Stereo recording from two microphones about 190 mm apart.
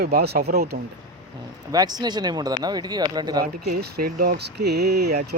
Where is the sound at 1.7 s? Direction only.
20° right (ahead or behind).